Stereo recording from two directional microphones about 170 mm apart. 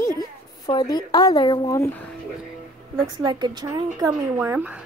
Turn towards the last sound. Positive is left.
turn(degrees=-10)  # may be behind; listen again after turning